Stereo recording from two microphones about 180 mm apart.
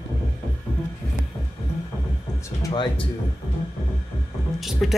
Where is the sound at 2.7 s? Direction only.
25° left (ahead or behind).